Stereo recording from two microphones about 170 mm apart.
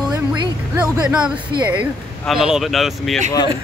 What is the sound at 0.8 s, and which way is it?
Speech, 5° right (ahead or behind).